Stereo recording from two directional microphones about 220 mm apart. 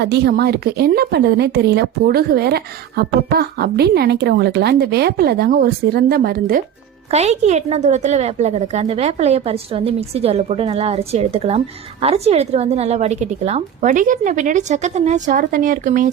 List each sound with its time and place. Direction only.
0.0 s speech: 45° right (ahead or behind)
7.1 s a woman's voice: 30° right (ahead or behind)